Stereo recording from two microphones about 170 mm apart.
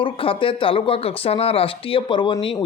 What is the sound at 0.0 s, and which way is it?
A man's voice, 30° left (ahead or behind).